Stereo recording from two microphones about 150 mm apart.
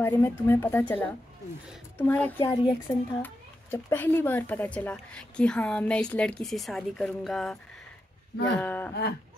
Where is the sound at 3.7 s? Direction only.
15° left (ahead or behind).